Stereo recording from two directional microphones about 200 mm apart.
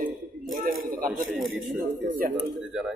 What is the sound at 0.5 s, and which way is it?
Speech, 45° right (ahead or behind).